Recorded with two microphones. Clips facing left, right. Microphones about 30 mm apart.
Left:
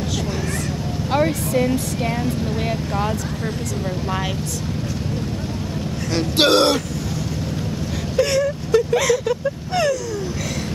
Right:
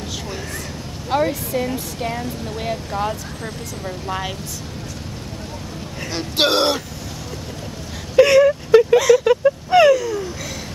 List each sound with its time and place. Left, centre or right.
1.1 s speech: centre
6.1 s speech: centre
8.2 s speech: right
8.9 s speech: centre
9.2 s speech: right